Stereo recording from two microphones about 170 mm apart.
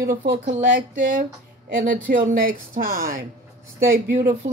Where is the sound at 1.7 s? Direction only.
55° right (ahead or behind).